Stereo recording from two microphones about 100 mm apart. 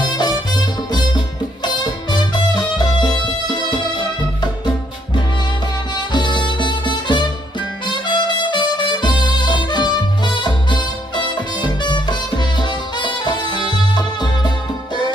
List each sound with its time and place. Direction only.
0.0 s music: 45° left (ahead or behind)
5.9 s music: 50° left (ahead or behind)